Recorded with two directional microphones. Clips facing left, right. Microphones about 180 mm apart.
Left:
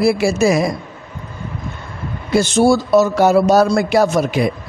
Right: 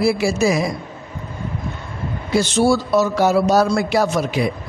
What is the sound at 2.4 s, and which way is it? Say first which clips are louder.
A man's voice: left 3 dB; 45° left (ahead or behind).